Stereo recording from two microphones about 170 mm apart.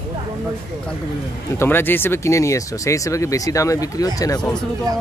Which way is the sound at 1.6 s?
15° left (ahead or behind).